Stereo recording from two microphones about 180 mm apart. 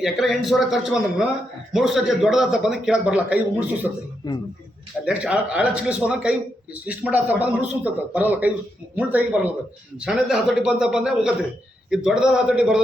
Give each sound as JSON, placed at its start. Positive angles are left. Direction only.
{"t": 0.0, "sound": "a man's voice", "side_deg": 0}
{"t": 4.2, "sound": "speech", "side_deg": 20}
{"t": 5.0, "sound": "a man's voice", "side_deg": -5}